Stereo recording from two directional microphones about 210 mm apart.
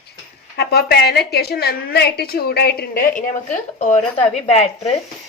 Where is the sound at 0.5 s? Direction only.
50° left (ahead or behind).